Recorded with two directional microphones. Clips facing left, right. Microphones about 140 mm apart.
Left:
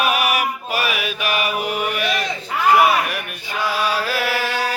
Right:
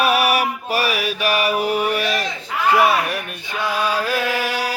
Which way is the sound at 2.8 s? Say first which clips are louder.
Even; 30° right (ahead or behind).